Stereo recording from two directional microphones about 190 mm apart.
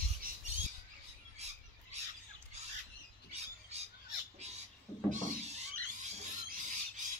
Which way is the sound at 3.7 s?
35° right (ahead or behind).